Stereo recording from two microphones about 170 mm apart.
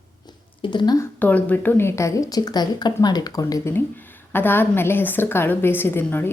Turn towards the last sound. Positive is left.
turn(degrees=10)  # may be behind; listen again after turning